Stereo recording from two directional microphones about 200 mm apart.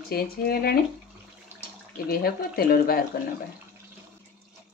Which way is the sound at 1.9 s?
45° left (ahead or behind).